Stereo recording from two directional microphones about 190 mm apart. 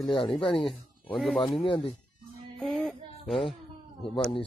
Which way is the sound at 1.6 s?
25° left (ahead or behind).